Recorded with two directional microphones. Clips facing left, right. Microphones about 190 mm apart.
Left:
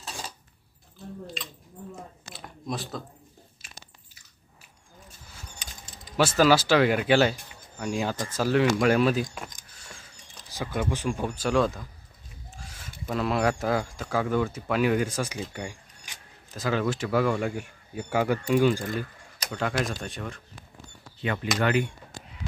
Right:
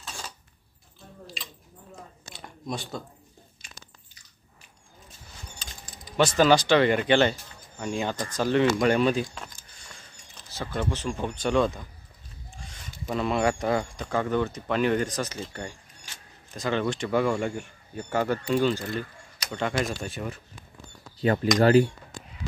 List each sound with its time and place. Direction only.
1.2 s chewing: centre (ahead or behind)
2.3 s a sound: centre (ahead or behind)
3.6 s biting: 5° left (ahead or behind)
5.6 s typing: 15° left (ahead or behind)
6.1 s a man's voice: 5° left (ahead or behind)
12.5 s a sound: 5° left (ahead or behind)
13.0 s a man's voice: centre (ahead or behind)
19.5 s speech: centre (ahead or behind)
21.2 s speech: 35° right (ahead or behind)